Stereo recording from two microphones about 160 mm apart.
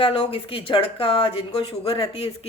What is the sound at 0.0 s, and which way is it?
Speech, 35° left (ahead or behind).